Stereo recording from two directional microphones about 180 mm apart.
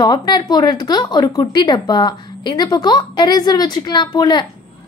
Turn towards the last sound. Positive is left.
turn(degrees=25)  # may be behind; listen again after turning